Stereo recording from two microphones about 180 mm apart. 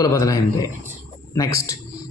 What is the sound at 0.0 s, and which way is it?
A man's voice, 20° left (ahead or behind).